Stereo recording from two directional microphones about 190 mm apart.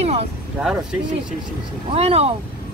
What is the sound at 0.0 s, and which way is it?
Speech, 35° right (ahead or behind).